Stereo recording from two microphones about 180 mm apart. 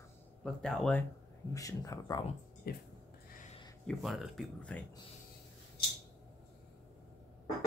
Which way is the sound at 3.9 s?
Centre (ahead or behind).